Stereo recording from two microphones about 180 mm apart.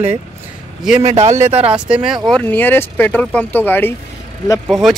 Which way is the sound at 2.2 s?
5° left (ahead or behind).